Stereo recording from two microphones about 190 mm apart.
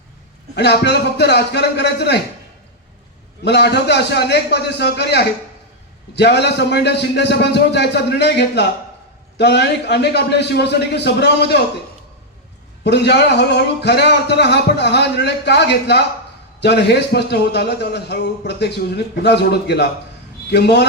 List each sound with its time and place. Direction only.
0.5 s a man's voice: 60° left (ahead or behind)
3.4 s a man's voice: 60° left (ahead or behind)
12.8 s a man's voice: 60° left (ahead or behind)